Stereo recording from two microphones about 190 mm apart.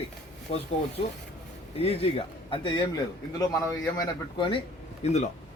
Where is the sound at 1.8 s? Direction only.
30° left (ahead or behind).